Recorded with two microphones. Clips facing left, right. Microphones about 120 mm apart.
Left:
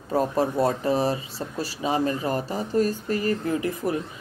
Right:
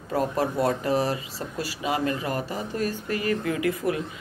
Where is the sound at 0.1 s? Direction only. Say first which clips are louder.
Left 2 dB; 25° left (ahead or behind).